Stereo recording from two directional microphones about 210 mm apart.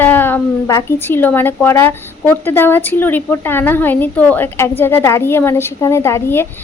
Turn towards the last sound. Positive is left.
turn(degrees=10)  # may be behind; listen again after turning